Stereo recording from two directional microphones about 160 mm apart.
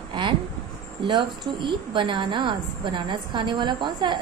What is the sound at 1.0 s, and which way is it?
A woman's voice, 30° right (ahead or behind).